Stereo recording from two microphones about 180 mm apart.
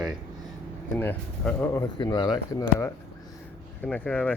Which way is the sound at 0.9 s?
10° left (ahead or behind).